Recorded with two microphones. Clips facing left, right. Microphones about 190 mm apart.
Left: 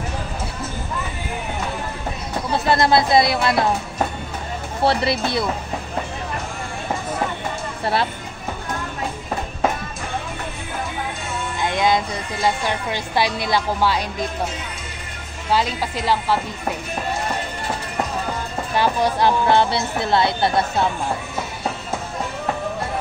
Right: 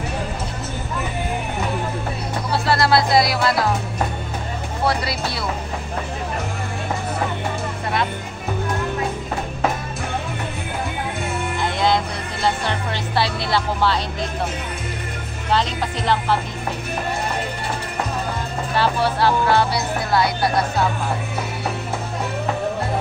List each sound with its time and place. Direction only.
2.5 s speech: 20° left (ahead or behind)
4.8 s speech: 25° left (ahead or behind)
11.6 s speech: 15° left (ahead or behind)
15.5 s speech: 10° left (ahead or behind)
18.8 s speech: 15° left (ahead or behind)